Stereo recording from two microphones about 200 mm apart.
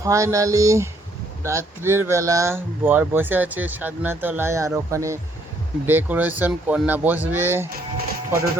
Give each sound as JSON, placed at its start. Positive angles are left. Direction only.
{"t": 0.0, "sound": "speech", "side_deg": -15}